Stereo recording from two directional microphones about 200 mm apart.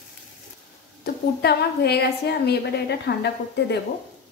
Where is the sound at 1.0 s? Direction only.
55° left (ahead or behind).